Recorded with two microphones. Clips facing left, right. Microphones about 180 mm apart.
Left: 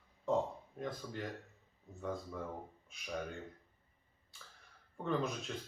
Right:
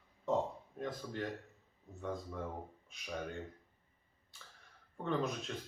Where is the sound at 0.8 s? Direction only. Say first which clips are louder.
Right 2 dB; centre (ahead or behind).